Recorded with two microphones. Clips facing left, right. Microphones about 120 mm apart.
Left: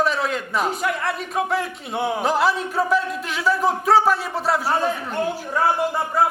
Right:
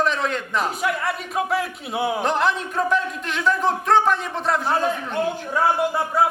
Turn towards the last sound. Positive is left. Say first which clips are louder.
# even
turn(degrees=0)  # may be behind; listen again after turning